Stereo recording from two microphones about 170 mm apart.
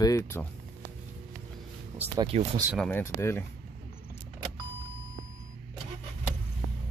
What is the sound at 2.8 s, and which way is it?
Speech, 10° left (ahead or behind).